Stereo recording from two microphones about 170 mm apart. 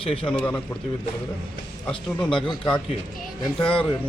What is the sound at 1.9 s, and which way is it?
Speech, 30° left (ahead or behind).